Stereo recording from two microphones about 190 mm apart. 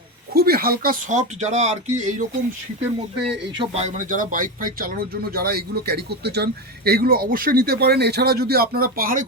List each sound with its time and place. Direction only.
0.3 s speech: 55° right (ahead or behind)
3.6 s speech: 35° right (ahead or behind)